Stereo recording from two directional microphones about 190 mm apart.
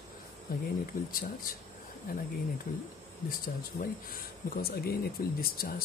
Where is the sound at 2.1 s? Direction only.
50° left (ahead or behind).